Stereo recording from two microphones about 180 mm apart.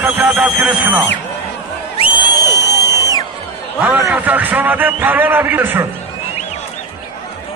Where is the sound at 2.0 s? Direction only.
30° left (ahead or behind).